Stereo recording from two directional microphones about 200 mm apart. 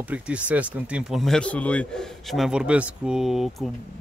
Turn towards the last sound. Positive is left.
turn(degrees=0)  # may be behind; listen again after turning